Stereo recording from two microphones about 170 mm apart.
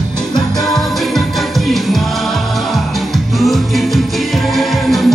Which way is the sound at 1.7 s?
Centre (ahead or behind).